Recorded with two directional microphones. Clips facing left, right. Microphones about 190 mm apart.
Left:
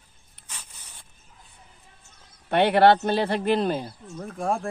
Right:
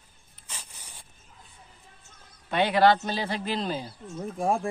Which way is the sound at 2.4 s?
60° left (ahead or behind).